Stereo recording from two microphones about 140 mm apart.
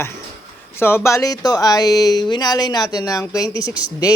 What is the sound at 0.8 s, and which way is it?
Speech, 15° left (ahead or behind).